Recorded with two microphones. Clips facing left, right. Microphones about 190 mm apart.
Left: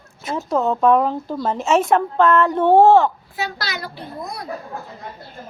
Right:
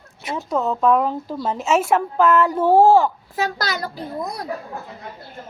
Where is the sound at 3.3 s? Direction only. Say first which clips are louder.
Right 4 dB; 45° right (ahead or behind).